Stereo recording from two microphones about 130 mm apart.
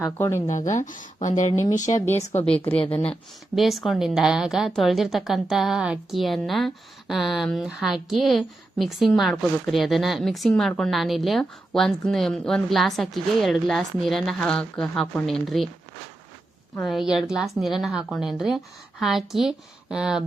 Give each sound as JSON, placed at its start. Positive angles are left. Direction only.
{"t": 0.2, "sound": "speech", "side_deg": 20}
{"t": 0.4, "sound": "speech", "side_deg": 70}
{"t": 1.7, "sound": "speech", "side_deg": 70}
{"t": 2.1, "sound": "speech", "side_deg": 55}
{"t": 3.5, "sound": "speech", "side_deg": 0}
{"t": 16.8, "sound": "speech", "side_deg": 0}